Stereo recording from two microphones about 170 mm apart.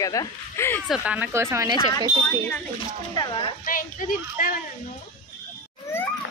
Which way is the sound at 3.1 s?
30° left (ahead or behind).